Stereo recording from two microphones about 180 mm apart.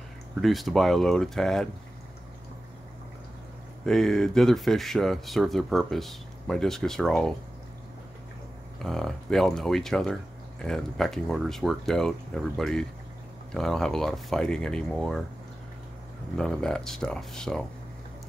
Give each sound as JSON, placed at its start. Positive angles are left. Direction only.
{"t": 0.4, "sound": "speech", "side_deg": 0}
{"t": 3.8, "sound": "speech", "side_deg": 0}
{"t": 8.8, "sound": "speech", "side_deg": 0}
{"t": 16.3, "sound": "speech", "side_deg": 5}